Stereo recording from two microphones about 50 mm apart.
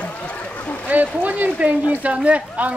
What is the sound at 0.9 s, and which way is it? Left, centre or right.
Speech, right.